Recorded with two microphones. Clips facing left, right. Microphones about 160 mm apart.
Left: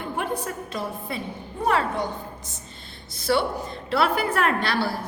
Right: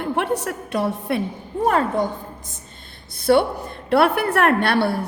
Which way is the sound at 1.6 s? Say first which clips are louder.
Right 4 dB; 45° right (ahead or behind).